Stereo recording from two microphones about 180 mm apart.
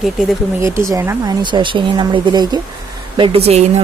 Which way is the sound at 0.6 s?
15° right (ahead or behind).